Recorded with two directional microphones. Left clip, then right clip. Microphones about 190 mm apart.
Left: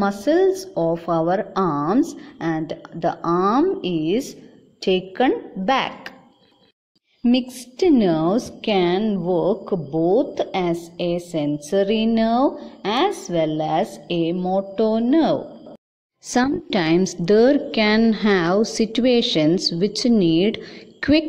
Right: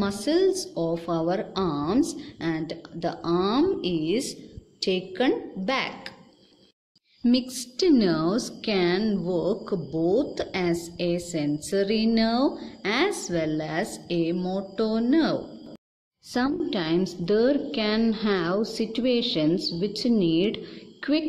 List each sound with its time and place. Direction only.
0.0 s a woman's voice: 20° left (ahead or behind)
7.2 s a woman's voice: 15° left (ahead or behind)
16.3 s a woman's voice: 30° left (ahead or behind)